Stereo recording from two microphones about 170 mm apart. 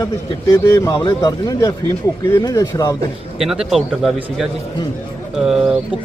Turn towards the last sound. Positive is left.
turn(degrees=-5)  # may be behind; listen again after turning